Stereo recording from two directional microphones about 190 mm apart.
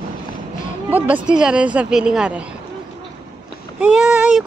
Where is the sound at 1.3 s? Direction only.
5° right (ahead or behind).